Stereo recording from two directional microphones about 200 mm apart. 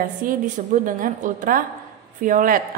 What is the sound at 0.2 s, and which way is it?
A woman's voice, 45° right (ahead or behind).